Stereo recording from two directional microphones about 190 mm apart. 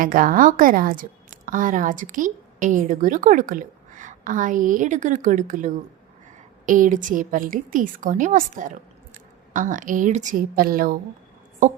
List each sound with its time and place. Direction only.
0.0 s a woman's voice: 45° right (ahead or behind)